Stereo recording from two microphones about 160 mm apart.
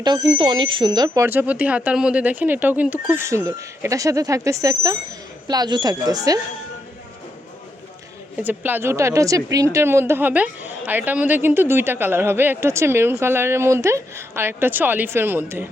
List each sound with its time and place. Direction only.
0.0 s speech: 25° right (ahead or behind)
8.4 s a woman's voice: 10° right (ahead or behind)